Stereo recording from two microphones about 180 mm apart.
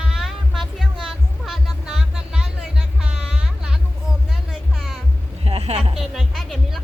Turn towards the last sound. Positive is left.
turn(degrees=0)  # may be behind; listen again after turning